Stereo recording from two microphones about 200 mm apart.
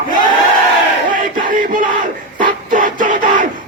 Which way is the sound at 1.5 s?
40° right (ahead or behind).